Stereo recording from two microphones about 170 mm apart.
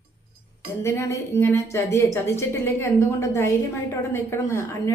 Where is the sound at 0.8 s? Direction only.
15° left (ahead or behind).